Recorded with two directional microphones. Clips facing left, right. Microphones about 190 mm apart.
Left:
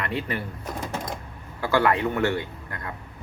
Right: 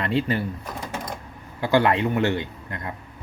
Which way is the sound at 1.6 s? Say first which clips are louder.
Right 2 dB; 20° right (ahead or behind).